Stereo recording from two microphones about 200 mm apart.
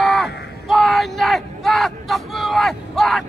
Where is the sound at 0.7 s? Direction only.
Centre (ahead or behind).